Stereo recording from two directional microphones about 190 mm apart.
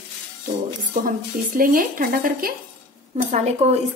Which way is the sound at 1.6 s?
50° right (ahead or behind).